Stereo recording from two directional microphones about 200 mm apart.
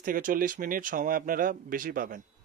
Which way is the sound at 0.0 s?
45° right (ahead or behind).